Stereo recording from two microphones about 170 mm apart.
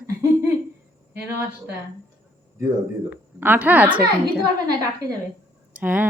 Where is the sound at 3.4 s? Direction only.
10° right (ahead or behind).